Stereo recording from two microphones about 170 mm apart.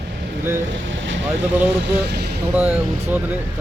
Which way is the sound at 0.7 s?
90° right.